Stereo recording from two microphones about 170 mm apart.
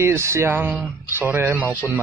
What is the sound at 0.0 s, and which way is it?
A man's voice, 15° right (ahead or behind).